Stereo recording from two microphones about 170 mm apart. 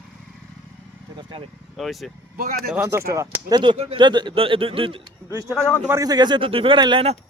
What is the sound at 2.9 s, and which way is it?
Speech, 15° right (ahead or behind).